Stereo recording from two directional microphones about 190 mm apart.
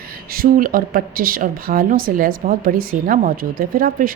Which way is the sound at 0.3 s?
50° right (ahead or behind).